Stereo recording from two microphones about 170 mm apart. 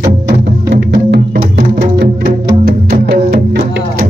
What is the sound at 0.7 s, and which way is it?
Music, 70° right (ahead or behind).